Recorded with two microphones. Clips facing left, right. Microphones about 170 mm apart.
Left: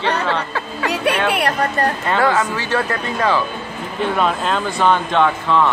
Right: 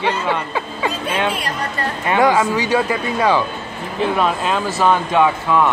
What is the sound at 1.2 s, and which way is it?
Speech, 65° left (ahead or behind).